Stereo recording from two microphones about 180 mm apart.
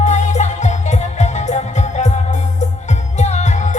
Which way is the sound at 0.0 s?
40° left (ahead or behind).